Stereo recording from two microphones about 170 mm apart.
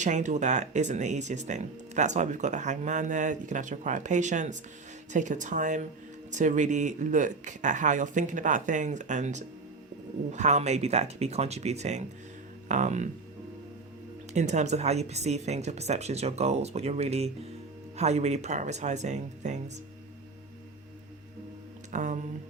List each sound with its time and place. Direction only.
0.0 s speech: 45° right (ahead or behind)
14.3 s speech: 45° right (ahead or behind)
21.9 s speech: 45° right (ahead or behind)